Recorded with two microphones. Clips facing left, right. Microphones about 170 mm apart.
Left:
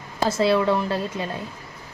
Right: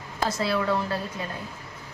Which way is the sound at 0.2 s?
25° left (ahead or behind).